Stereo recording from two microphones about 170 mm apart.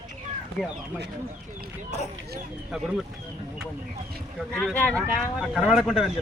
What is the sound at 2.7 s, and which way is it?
Speech, 5° right (ahead or behind).